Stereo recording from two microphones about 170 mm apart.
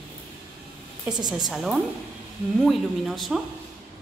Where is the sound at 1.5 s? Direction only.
5° right (ahead or behind).